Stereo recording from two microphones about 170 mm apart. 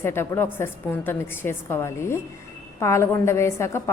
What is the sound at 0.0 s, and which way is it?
A woman's voice, 15° left (ahead or behind).